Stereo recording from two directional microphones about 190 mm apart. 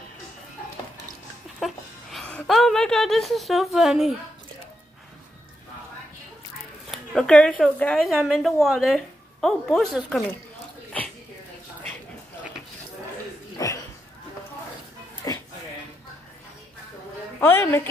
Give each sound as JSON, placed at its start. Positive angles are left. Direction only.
{"t": 1.6, "sound": "speech", "side_deg": 0}
{"t": 6.9, "sound": "a woman's voice", "side_deg": 0}
{"t": 13.6, "sound": "dog", "side_deg": 20}
{"t": 15.2, "sound": "music", "side_deg": 15}
{"t": 17.4, "sound": "a woman's voice", "side_deg": 15}